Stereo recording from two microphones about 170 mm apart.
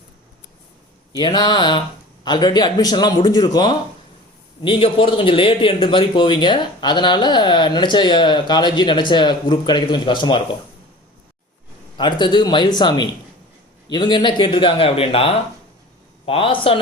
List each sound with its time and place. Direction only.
1.1 s a man's voice: 25° left (ahead or behind)
11.9 s a man's voice: 25° left (ahead or behind)